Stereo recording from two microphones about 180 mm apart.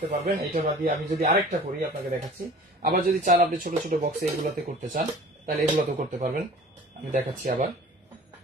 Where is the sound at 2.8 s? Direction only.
55° right (ahead or behind).